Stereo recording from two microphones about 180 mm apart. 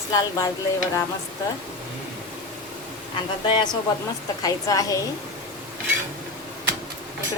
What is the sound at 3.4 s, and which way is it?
A woman's voice, 25° left (ahead or behind).